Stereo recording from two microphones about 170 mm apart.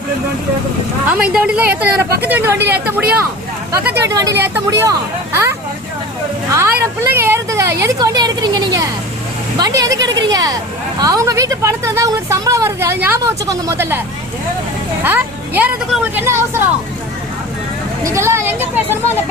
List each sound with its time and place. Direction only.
1.1 s speech: 5° right (ahead or behind)
7.0 s a woman's voice: 15° right (ahead or behind)
15.0 s speech: 10° right (ahead or behind)
18.0 s speech: 15° right (ahead or behind)